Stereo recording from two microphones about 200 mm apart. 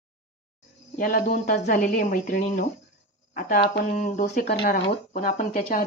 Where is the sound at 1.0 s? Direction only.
45° left (ahead or behind).